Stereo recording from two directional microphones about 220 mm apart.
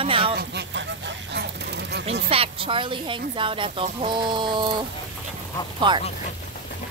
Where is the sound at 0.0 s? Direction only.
25° right (ahead or behind).